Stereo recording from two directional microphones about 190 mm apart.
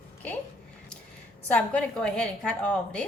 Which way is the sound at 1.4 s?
5° left (ahead or behind).